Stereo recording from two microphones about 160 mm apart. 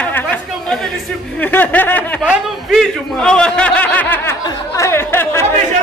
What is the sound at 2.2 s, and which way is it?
A man's voice, centre (ahead or behind).